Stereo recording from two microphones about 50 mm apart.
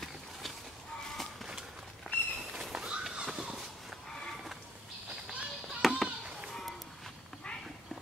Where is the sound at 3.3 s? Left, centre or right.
Centre.